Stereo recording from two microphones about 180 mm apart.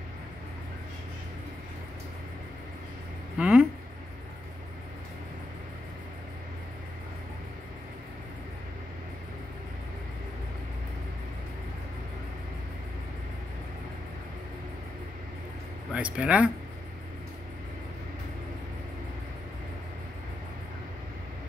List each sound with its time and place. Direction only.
3.3 s speech: 5° right (ahead or behind)
15.9 s speech: 5° right (ahead or behind)